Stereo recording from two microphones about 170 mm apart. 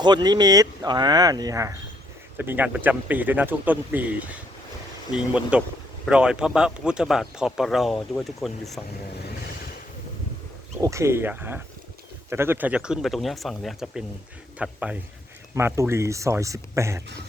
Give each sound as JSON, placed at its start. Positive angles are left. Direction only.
{"t": 0.0, "sound": "speech", "side_deg": -25}
{"t": 10.8, "sound": "speech", "side_deg": -15}